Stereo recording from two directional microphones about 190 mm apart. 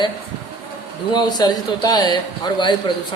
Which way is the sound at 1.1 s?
20° left (ahead or behind).